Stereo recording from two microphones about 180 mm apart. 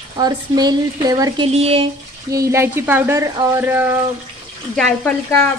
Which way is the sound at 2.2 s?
15° right (ahead or behind).